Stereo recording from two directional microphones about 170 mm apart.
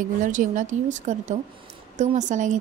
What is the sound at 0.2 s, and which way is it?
Speech, 50° right (ahead or behind).